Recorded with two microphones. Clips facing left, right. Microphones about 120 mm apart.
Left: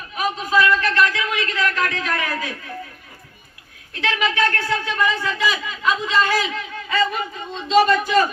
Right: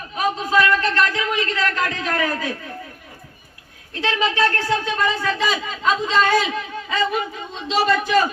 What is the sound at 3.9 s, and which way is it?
A man's voice, 30° right (ahead or behind).